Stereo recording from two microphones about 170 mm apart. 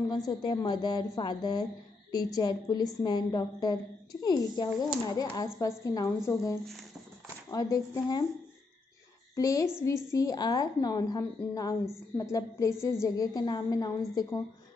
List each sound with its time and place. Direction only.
0.3 s speech: 25° left (ahead or behind)
7.5 s speech: 20° left (ahead or behind)
9.3 s a woman's voice: 20° left (ahead or behind)